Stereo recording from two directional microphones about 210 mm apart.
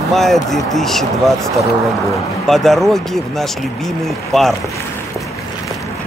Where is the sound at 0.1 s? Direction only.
Centre (ahead or behind).